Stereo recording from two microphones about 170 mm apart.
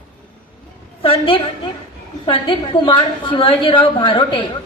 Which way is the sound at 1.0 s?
30° left (ahead or behind).